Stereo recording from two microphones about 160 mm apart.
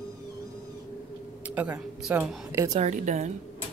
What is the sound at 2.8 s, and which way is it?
Speech, 45° right (ahead or behind).